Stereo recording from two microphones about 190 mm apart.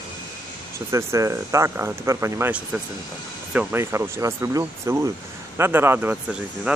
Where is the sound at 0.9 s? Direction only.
15° right (ahead or behind).